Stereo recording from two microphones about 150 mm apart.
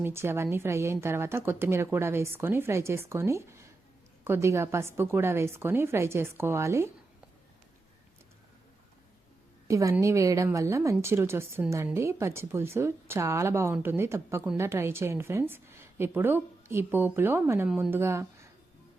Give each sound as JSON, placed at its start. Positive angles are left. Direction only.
{"t": 0.0, "sound": "a woman's voice", "side_deg": -15}
{"t": 9.6, "sound": "a woman's voice", "side_deg": -20}